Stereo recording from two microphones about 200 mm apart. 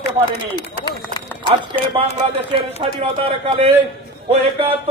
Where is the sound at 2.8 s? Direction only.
25° right (ahead or behind).